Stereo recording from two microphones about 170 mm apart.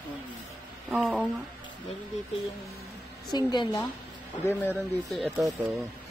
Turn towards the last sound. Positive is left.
turn(degrees=0)  # may be behind; listen again after turning